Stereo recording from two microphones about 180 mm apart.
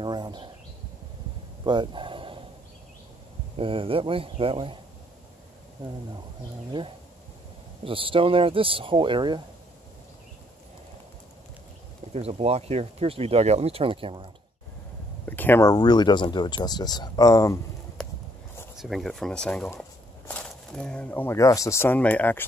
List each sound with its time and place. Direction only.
0.0 s speech: 25° right (ahead or behind)
1.6 s a sound: 25° right (ahead or behind)
3.5 s speech: 30° right (ahead or behind)
7.8 s speech: 30° right (ahead or behind)
12.1 s speech: 35° right (ahead or behind)
15.2 s speech: 10° left (ahead or behind)
18.0 s a sound: 5° left (ahead or behind)
18.8 s speech: centre (ahead or behind)